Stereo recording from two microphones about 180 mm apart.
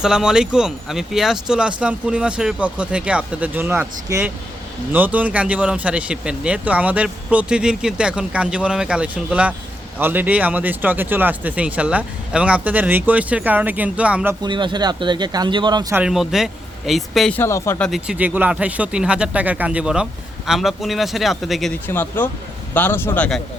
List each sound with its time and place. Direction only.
0.0 s speech: 5° right (ahead or behind)
14.4 s speech: 25° right (ahead or behind)
16.0 s speech: 5° right (ahead or behind); by 17.8 s 15° left (ahead or behind)
17.8 s speech: 5° right (ahead or behind)
21.8 s speech: 10° left (ahead or behind)